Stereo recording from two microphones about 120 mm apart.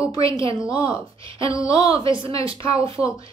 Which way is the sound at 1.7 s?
50° right (ahead or behind).